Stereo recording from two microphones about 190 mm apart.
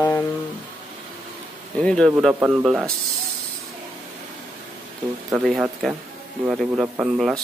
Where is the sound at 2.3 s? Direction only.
10° right (ahead or behind).